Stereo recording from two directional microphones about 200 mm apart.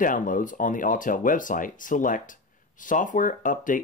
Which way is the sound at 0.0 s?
40° left (ahead or behind).